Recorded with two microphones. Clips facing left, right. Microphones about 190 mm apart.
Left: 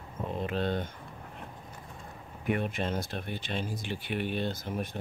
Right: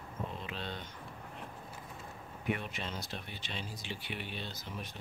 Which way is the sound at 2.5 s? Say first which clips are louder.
Left 7 dB; 50° left (ahead or behind).